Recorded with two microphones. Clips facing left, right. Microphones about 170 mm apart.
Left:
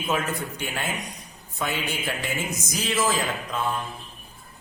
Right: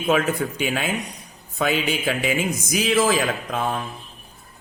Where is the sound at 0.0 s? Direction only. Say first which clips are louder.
Right 6 dB; 60° right (ahead or behind); by 0.9 s 90° right.